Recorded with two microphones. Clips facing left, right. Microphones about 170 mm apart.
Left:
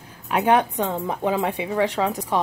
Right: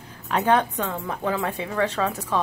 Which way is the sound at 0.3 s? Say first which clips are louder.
Left 2 dB; 10° left (ahead or behind).